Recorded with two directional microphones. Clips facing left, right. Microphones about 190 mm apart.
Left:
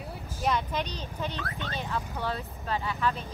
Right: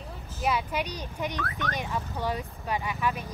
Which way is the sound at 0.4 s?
10° right (ahead or behind).